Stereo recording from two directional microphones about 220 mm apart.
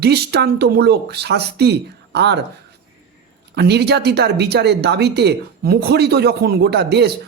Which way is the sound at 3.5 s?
50° right (ahead or behind).